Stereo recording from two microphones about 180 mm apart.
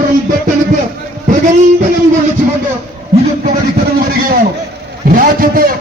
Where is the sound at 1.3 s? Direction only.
45° right (ahead or behind).